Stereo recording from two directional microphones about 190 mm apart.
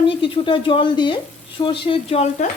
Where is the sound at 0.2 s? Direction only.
25° left (ahead or behind).